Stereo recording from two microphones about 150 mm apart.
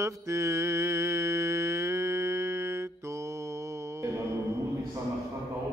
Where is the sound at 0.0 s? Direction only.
20° right (ahead or behind).